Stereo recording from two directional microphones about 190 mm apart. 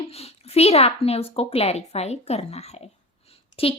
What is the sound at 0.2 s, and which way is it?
A woman's voice, 35° left (ahead or behind).